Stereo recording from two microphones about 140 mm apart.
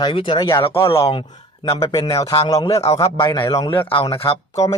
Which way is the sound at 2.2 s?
45° left (ahead or behind).